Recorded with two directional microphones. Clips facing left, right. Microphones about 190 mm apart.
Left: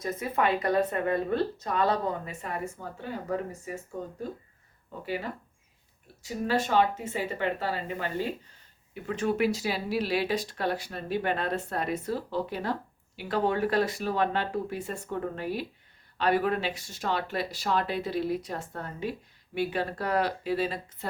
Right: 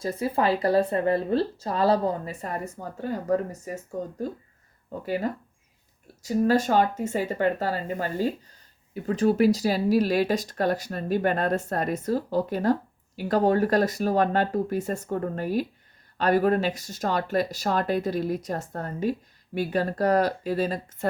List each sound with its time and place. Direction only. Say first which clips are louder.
0.0 s speech: right 3 dB; 30° right (ahead or behind)